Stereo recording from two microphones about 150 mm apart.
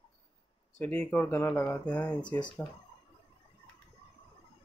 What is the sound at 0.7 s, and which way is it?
Speech, 10° left (ahead or behind).